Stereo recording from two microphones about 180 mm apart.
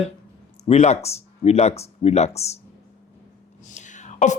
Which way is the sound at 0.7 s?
35° left (ahead or behind).